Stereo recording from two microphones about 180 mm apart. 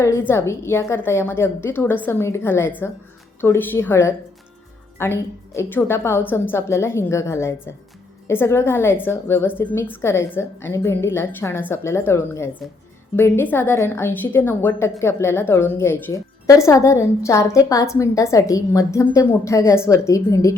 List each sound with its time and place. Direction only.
0.0 s a woman's voice: 15° left (ahead or behind)